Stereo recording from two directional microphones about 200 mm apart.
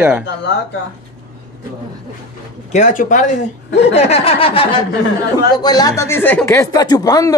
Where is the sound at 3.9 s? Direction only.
30° left (ahead or behind).